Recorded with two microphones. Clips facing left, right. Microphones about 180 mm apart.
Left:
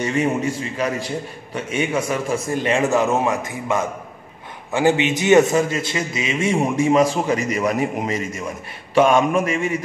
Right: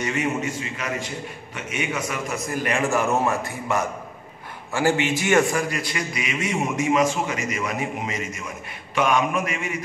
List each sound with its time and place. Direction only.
0.0 s a man's voice: 30° left (ahead or behind)